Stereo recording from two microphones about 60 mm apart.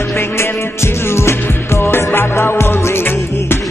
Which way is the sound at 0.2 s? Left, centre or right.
Left.